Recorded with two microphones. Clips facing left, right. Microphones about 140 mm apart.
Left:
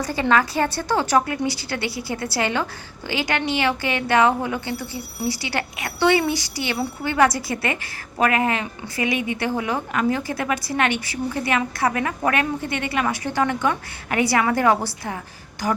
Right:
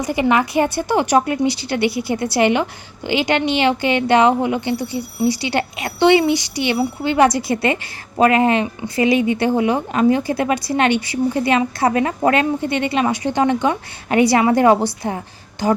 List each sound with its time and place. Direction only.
0.0 s a woman's voice: 15° right (ahead or behind)